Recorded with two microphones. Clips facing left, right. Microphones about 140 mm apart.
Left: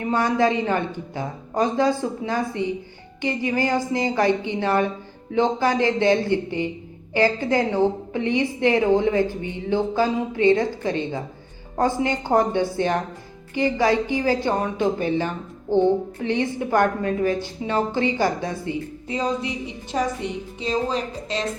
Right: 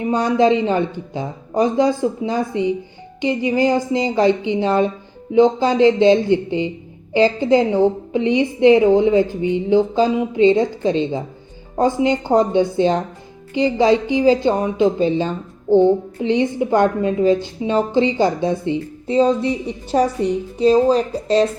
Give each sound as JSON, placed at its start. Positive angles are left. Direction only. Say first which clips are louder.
{"t": 0.0, "sound": "a woman's voice", "louder": "right 4 dB", "side_deg": -15}